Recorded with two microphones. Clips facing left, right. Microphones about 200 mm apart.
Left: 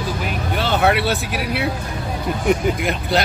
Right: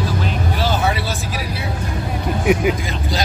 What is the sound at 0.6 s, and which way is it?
Vehicle, 60° left (ahead or behind).